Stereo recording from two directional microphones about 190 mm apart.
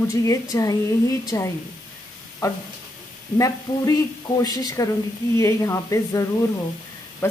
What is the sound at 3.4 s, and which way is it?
A woman's voice, 20° left (ahead or behind).